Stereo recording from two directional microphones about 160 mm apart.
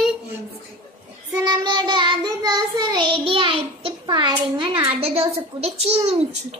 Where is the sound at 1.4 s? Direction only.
30° right (ahead or behind).